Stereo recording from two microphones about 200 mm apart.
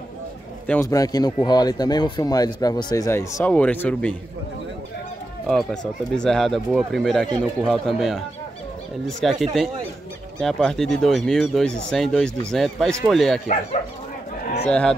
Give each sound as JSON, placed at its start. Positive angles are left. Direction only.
{"t": 0.7, "sound": "a man's voice", "side_deg": 15}
{"t": 5.5, "sound": "speech", "side_deg": 0}
{"t": 14.7, "sound": "speech", "side_deg": 5}